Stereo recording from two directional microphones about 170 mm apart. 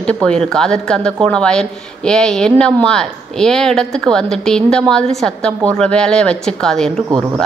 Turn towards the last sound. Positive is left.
turn(degrees=-20)  # may be behind; listen again after turning